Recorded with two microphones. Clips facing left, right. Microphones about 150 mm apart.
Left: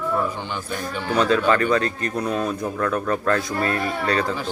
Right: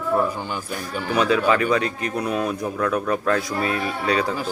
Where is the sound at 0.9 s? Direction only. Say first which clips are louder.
Even; 10° right (ahead or behind).